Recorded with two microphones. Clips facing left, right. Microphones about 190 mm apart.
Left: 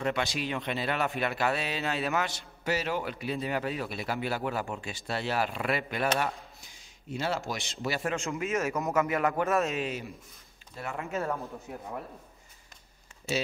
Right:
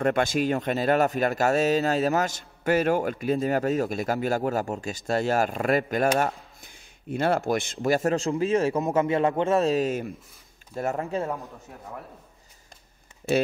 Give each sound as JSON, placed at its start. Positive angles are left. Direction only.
{"t": 0.0, "sound": "speech", "side_deg": -50}